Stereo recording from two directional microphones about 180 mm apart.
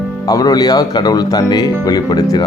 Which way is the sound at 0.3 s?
20° left (ahead or behind).